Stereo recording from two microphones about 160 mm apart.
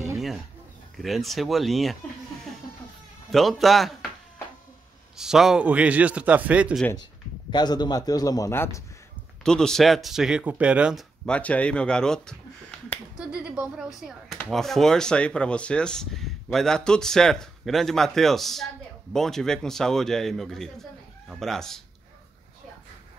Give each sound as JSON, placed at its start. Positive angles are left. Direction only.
{"t": 0.9, "sound": "speech", "side_deg": 0}
{"t": 3.3, "sound": "speech", "side_deg": 0}
{"t": 5.1, "sound": "a man's voice", "side_deg": -5}
{"t": 7.5, "sound": "a man's voice", "side_deg": 25}
{"t": 9.4, "sound": "speech", "side_deg": 5}
{"t": 13.2, "sound": "finger snapping", "side_deg": -5}
{"t": 14.4, "sound": "speech", "side_deg": 0}